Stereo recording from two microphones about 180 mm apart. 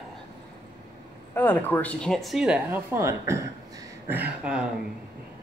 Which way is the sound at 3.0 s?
15° right (ahead or behind).